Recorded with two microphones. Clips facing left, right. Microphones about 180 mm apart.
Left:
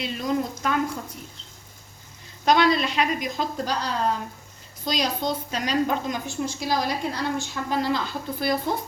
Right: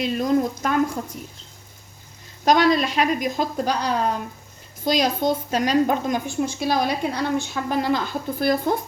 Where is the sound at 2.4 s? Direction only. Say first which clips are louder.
Right 2 dB; 45° right (ahead or behind).